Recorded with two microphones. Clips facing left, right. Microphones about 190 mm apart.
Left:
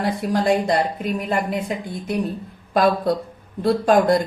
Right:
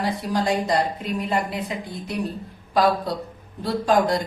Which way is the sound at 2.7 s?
55° left (ahead or behind).